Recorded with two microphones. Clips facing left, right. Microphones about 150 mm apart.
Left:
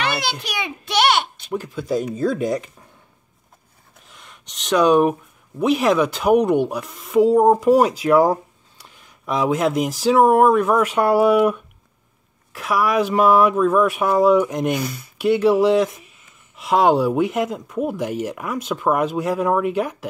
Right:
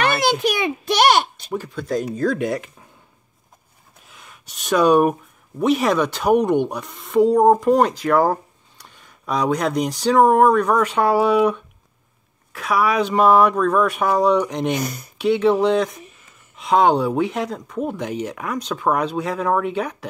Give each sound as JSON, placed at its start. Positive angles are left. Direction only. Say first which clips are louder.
{"t": 0.0, "sound": "a child's voice", "louder": "right 6 dB", "side_deg": -50}
{"t": 1.5, "sound": "speech", "louder": "left 1 dB", "side_deg": 0}
{"t": 4.1, "sound": "speech", "louder": "even", "side_deg": -5}
{"t": 14.8, "sound": "speech", "louder": "even", "side_deg": -40}
{"t": 15.1, "sound": "speech", "louder": "left 1 dB", "side_deg": 5}